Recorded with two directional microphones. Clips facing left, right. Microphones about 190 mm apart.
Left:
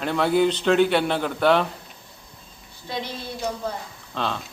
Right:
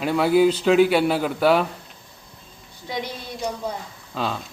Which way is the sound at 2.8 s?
15° right (ahead or behind).